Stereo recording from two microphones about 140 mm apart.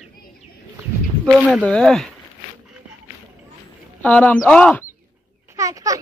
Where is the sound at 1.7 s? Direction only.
5° left (ahead or behind).